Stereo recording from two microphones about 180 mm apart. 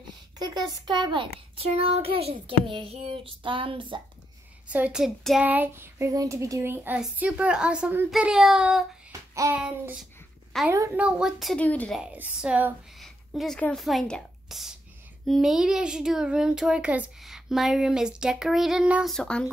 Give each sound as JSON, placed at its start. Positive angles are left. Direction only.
{"t": 0.4, "sound": "speech", "side_deg": -25}
{"t": 1.8, "sound": "child singing", "side_deg": -30}
{"t": 2.4, "sound": "speech", "side_deg": -30}
{"t": 4.6, "sound": "child singing", "side_deg": -10}
{"t": 8.1, "sound": "speech", "side_deg": -5}
{"t": 9.3, "sound": "child singing", "side_deg": -15}
{"t": 9.6, "sound": "speech", "side_deg": -5}
{"t": 12.0, "sound": "speech", "side_deg": -5}